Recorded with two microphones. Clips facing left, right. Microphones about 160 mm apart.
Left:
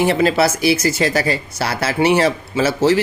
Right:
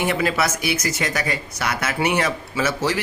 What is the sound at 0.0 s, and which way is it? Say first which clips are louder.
A man's voice: left 6 dB; 30° left (ahead or behind).